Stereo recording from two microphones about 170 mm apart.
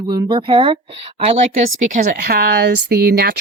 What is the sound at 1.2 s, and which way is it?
Speech, 45° right (ahead or behind).